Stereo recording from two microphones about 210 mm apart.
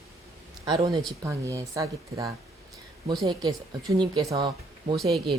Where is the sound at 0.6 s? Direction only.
20° right (ahead or behind).